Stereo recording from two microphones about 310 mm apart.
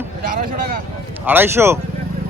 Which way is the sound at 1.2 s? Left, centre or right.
Centre.